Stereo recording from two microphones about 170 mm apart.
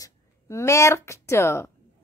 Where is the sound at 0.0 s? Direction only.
15° left (ahead or behind).